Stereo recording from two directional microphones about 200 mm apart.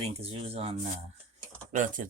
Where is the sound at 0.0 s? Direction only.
30° right (ahead or behind).